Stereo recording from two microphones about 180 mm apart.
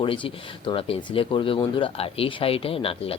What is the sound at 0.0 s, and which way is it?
Speech, 30° left (ahead or behind).